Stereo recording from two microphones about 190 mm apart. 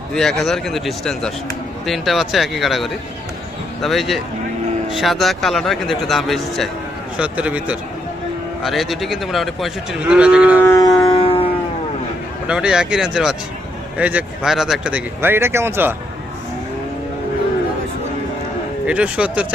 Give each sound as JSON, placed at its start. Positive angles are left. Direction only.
{"t": 0.2, "sound": "speech", "side_deg": 0}
{"t": 10.6, "sound": "music", "side_deg": 15}
{"t": 12.5, "sound": "speech", "side_deg": -5}
{"t": 18.9, "sound": "speech", "side_deg": -5}